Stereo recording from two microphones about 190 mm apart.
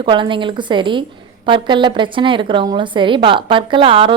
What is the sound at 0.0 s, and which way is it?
A woman's voice, 25° right (ahead or behind).